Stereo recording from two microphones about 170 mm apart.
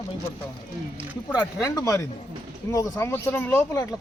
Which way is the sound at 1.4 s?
20° left (ahead or behind).